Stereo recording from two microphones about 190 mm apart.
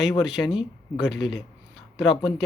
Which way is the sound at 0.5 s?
25° left (ahead or behind).